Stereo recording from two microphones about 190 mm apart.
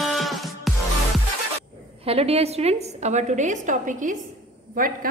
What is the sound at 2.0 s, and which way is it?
A woman's voice, 30° right (ahead or behind).